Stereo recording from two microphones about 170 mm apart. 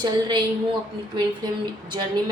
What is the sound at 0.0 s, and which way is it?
Speech, 25° right (ahead or behind).